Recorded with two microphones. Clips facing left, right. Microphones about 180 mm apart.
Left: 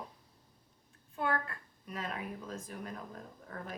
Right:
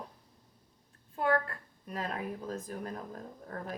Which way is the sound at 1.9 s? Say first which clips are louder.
Right 3 dB; 35° right (ahead or behind).